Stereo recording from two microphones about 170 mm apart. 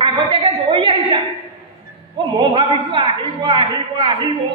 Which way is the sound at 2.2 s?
25° right (ahead or behind).